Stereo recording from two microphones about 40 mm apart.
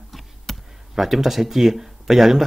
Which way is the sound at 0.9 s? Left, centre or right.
Centre.